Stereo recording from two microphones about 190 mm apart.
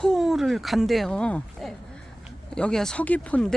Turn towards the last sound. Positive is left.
turn(degrees=5)  # may be behind; listen again after turning